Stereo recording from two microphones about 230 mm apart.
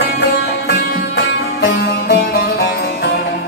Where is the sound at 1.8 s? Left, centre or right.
Left.